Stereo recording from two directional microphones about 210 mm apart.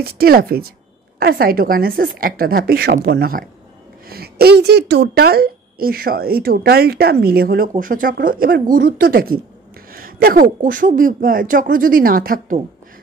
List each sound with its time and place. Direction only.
0.0 s a woman's voice: 45° right (ahead or behind)